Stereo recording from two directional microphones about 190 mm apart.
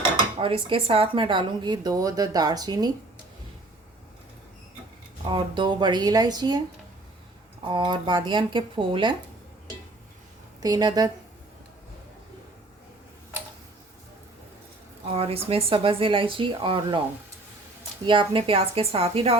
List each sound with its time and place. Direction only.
0.4 s a woman's voice: 30° right (ahead or behind)
5.3 s a woman's voice: 25° right (ahead or behind)
7.6 s a woman's voice: 25° right (ahead or behind)
10.6 s a woman's voice: 20° right (ahead or behind)
15.0 s a woman's voice: 30° right (ahead or behind)
18.0 s a woman's voice: 25° right (ahead or behind)